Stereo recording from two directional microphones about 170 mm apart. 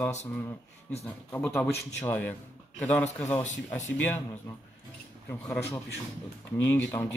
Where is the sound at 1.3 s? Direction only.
10° left (ahead or behind).